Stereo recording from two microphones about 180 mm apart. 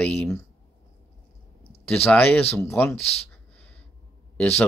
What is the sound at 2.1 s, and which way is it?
Speech, 10° left (ahead or behind).